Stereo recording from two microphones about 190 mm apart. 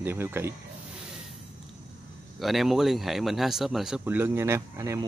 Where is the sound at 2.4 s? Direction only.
Centre (ahead or behind); by 5.0 s 15° right (ahead or behind).